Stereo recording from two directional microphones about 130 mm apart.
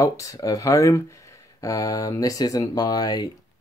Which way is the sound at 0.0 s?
25° left (ahead or behind).